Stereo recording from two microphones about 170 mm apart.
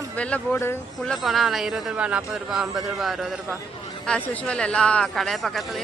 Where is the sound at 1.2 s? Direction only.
Centre (ahead or behind).